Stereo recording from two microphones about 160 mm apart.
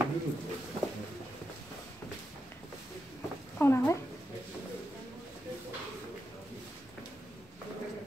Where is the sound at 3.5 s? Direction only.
15° left (ahead or behind).